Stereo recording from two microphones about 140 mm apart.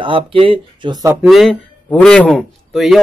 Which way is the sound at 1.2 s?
Centre (ahead or behind).